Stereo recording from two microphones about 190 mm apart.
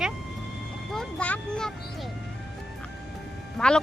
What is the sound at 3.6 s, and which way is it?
Speech, 5° left (ahead or behind).